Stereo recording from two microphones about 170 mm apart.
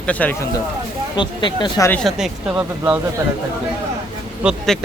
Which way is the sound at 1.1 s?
25° left (ahead or behind).